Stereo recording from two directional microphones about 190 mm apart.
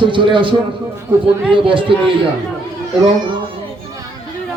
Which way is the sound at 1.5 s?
30° right (ahead or behind).